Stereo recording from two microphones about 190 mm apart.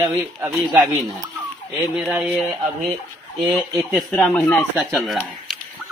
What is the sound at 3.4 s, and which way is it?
Speech, centre (ahead or behind).